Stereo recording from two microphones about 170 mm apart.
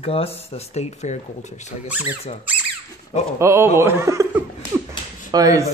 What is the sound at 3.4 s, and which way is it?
Speech, 15° right (ahead or behind).